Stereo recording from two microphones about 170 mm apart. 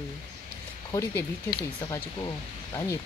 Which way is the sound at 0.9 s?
15° left (ahead or behind).